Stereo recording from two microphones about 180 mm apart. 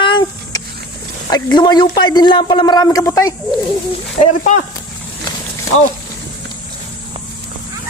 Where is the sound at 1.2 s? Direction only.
25° left (ahead or behind).